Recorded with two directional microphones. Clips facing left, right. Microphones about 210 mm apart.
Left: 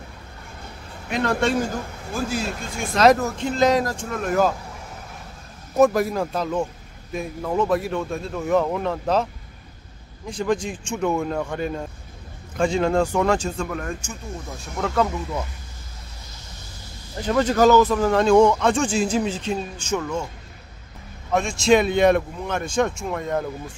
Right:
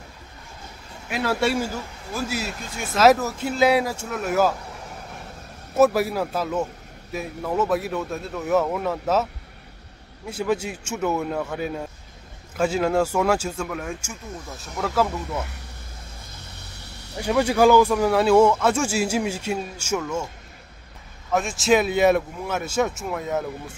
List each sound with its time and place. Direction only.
1.0 s speech: 5° right (ahead or behind)
5.8 s speech: 5° right (ahead or behind)
16.7 s vehicle: 70° right (ahead or behind)
17.2 s speech: 10° right (ahead or behind)
21.3 s speech: 5° right (ahead or behind)